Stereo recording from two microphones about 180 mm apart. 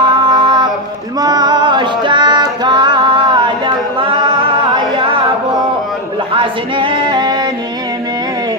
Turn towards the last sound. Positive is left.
turn(degrees=-25)  # may be behind; listen again after turning